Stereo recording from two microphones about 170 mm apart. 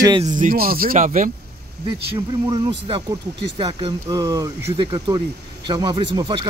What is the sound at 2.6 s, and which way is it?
Speech, 30° right (ahead or behind).